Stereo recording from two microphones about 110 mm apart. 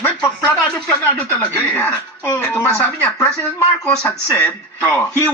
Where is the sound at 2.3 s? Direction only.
15° left (ahead or behind).